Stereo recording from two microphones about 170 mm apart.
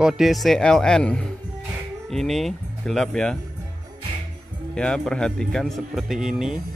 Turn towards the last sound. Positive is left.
turn(degrees=-5)  # may be behind; listen again after turning